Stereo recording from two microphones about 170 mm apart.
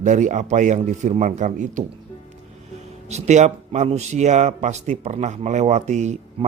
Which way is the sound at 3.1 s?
40° right (ahead or behind).